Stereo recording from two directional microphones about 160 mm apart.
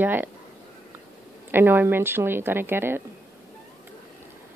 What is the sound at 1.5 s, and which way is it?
A woman's voice, 15° right (ahead or behind).